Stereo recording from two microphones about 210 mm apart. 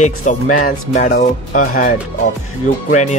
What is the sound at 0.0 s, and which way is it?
Speech, 35° left (ahead or behind).